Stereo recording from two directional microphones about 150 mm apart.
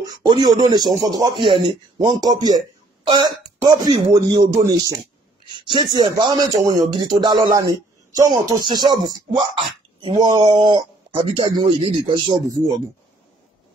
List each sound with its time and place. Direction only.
0.0 s speech: 25° right (ahead or behind)